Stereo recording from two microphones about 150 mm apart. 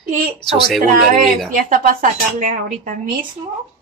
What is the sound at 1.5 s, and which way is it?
Speech, 65° right (ahead or behind).